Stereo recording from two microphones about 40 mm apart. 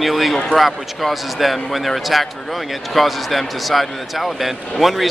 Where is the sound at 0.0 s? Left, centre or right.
Centre.